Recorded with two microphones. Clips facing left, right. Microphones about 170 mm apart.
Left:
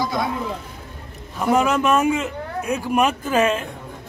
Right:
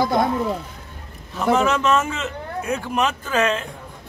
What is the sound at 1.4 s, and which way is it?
A man's voice, 10° left (ahead or behind).